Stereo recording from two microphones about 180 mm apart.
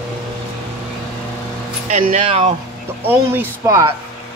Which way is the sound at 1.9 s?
35° right (ahead or behind).